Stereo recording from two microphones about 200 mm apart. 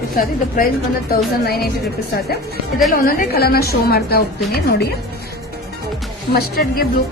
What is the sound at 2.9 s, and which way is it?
A woman's voice, 45° left (ahead or behind).